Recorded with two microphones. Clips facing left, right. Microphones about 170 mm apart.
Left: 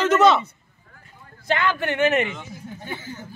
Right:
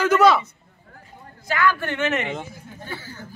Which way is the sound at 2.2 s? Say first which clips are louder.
Right 1 dB; 55° right (ahead or behind).